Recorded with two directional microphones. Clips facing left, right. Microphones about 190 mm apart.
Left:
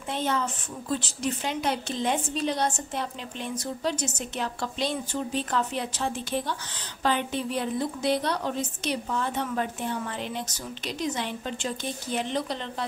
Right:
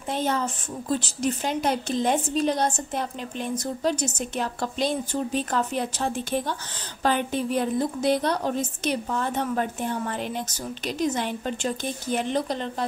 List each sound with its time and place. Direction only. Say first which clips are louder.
0.1 s a woman's voice: right 2 dB; 40° right (ahead or behind)